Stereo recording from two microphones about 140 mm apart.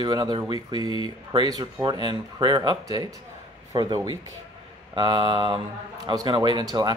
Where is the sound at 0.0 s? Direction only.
35° right (ahead or behind).